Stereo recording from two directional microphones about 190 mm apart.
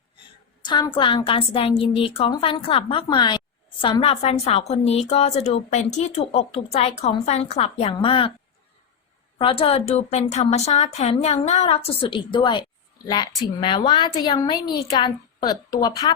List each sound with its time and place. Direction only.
0.6 s a woman's voice: 25° left (ahead or behind)
9.4 s a woman's voice: 30° left (ahead or behind)